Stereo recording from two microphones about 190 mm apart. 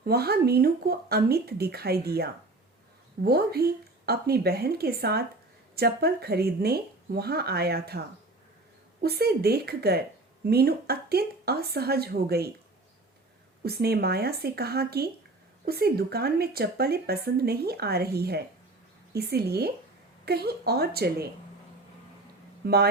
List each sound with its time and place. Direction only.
0.0 s speech: 55° right (ahead or behind)
13.7 s speech: 55° right (ahead or behind)
22.6 s speech: 55° right (ahead or behind)